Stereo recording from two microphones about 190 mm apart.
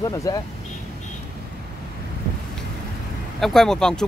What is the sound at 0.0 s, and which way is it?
Speech, 15° left (ahead or behind).